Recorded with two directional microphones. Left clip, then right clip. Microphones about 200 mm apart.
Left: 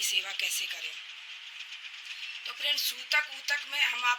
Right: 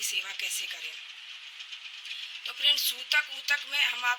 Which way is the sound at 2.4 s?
5° left (ahead or behind).